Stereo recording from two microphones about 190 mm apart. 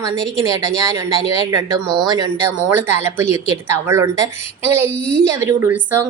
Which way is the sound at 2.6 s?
10° right (ahead or behind).